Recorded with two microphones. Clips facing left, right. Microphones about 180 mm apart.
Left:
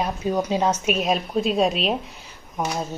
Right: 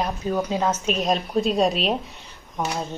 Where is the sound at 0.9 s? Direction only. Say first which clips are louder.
Even; centre (ahead or behind).